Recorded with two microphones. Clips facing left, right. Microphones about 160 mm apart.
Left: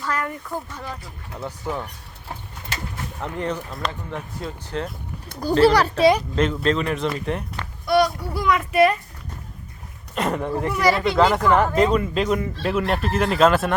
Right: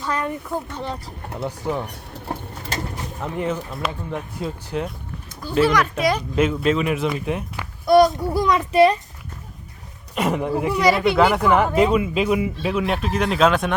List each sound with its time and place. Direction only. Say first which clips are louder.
0.0 s speech: right 2 dB; 20° right (ahead or behind)
1.4 s speech: right 3 dB; 15° right (ahead or behind)
2.3 s bird: right 5 dB; 40° right (ahead or behind)
3.2 s speech: right 2 dB; 5° right (ahead or behind)
5.6 s speech: left 5 dB; 35° left (ahead or behind)
6.3 s speech: right 2 dB; 10° right (ahead or behind)
7.9 s a child's voice: right 5 dB; 45° right (ahead or behind)
8.7 s speech: right 3 dB; 25° right (ahead or behind)
10.2 s speech: right 2 dB; 5° right (ahead or behind)